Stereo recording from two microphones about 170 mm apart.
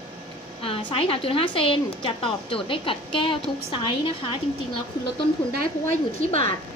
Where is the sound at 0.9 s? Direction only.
30° left (ahead or behind).